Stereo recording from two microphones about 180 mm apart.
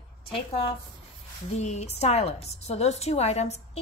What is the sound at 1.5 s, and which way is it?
A woman's voice, 40° left (ahead or behind).